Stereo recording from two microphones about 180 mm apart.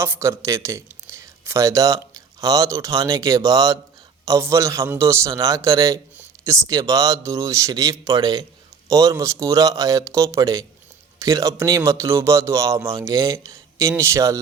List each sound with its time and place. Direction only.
0.0 s a man's voice: 15° right (ahead or behind)